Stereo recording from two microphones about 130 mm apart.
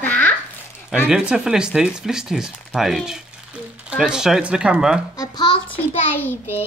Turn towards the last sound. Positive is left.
turn(degrees=15)  # may be behind; listen again after turning